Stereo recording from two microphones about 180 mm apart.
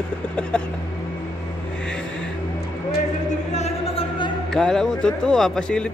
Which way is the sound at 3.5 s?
35° left (ahead or behind).